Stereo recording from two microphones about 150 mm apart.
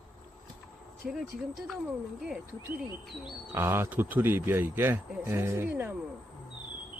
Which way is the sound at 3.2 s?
15° right (ahead or behind).